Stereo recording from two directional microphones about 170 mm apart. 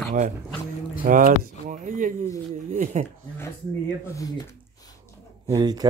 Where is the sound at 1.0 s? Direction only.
55° right (ahead or behind).